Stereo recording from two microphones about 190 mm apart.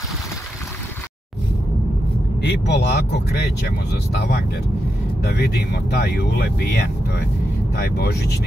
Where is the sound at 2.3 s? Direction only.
60° left (ahead or behind).